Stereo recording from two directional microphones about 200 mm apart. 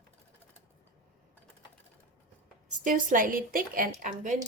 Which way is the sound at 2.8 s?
40° right (ahead or behind).